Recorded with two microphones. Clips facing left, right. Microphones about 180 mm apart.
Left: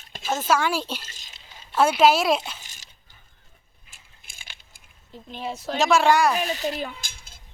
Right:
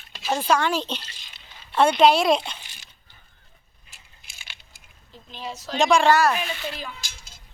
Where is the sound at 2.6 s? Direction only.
45° left (ahead or behind).